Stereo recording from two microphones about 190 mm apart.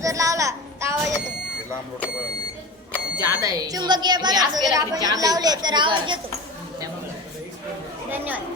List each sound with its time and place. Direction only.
0.0 s child singing: 15° right (ahead or behind)
3.2 s a woman's voice: 20° right (ahead or behind)
8.1 s speech: 10° right (ahead or behind)